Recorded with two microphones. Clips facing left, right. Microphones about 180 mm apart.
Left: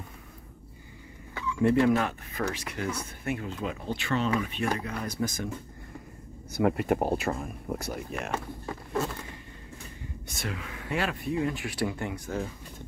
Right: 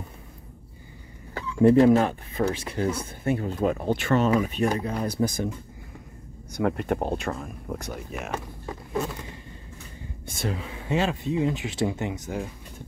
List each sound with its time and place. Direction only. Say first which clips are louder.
1.3 s speech: right 6 dB; 40° right (ahead or behind)
3.4 s speech: right 8 dB; 45° right (ahead or behind)
6.5 s speech: even; 5° left (ahead or behind)
10.2 s speech: right 6 dB; 30° right (ahead or behind); by 12.8 s 10° right (ahead or behind)